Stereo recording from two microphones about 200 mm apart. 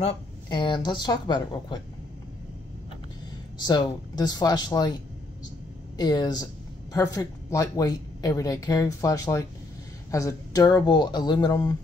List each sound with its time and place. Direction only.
0.0 s speech: 25° left (ahead or behind)
3.5 s speech: 20° left (ahead or behind)
5.9 s speech: 20° left (ahead or behind)